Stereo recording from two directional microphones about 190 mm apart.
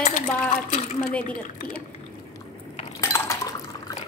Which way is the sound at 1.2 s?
40° left (ahead or behind).